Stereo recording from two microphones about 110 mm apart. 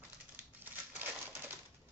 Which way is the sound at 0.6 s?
15° right (ahead or behind).